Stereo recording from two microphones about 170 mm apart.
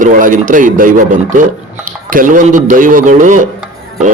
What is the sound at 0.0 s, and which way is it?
Speech, 50° right (ahead or behind).